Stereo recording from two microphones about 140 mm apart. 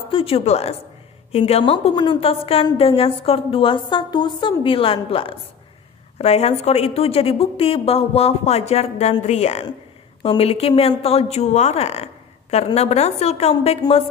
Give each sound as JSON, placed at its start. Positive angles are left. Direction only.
{"t": 0.1, "sound": "a woman's voice", "side_deg": 45}